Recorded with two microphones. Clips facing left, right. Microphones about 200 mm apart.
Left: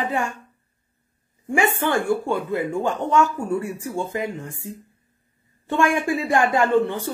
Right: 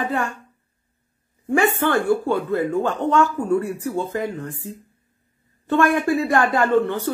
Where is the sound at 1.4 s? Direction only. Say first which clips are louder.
Right 2 dB; 20° left (ahead or behind).